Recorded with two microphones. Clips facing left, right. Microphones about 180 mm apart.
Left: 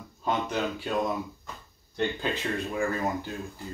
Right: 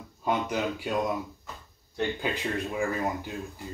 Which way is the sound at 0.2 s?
10° right (ahead or behind).